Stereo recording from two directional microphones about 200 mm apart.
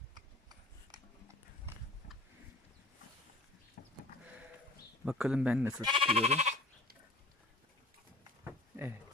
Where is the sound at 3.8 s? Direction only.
50° left (ahead or behind).